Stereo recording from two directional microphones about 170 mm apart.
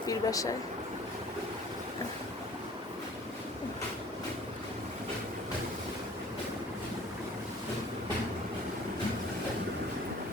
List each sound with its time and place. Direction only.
0.1 s speech: 20° left (ahead or behind)